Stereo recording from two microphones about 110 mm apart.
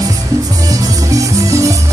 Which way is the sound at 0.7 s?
30° right (ahead or behind).